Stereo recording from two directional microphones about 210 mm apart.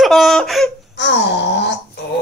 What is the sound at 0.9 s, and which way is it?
Wail, 55° left (ahead or behind).